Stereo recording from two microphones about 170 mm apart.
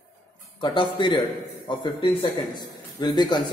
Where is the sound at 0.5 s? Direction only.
30° left (ahead or behind).